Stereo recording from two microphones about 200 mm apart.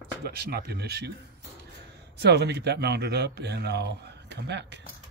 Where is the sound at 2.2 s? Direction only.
55° right (ahead or behind).